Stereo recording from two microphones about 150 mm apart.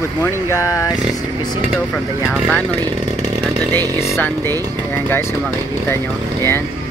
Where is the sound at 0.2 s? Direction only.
20° left (ahead or behind).